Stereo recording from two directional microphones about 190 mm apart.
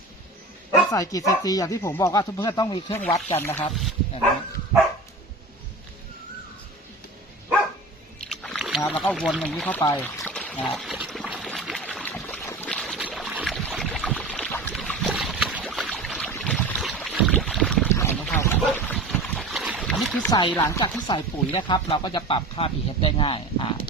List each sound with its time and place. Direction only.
0.7 s speech: 15° left (ahead or behind)
2.9 s speech: 10° left (ahead or behind)
3.7 s speech: centre (ahead or behind)
8.3 s rowboat: centre (ahead or behind)
9.2 s speech: 5° right (ahead or behind)
9.5 s trickle: 10° left (ahead or behind)
11.8 s boat: 5° left (ahead or behind)
15.1 s boat: 5° right (ahead or behind)
15.6 s a sound: centre (ahead or behind)
16.4 s boat: 5° left (ahead or behind)
17.9 s boat: 15° left (ahead or behind)
20.5 s speech: 15° left (ahead or behind)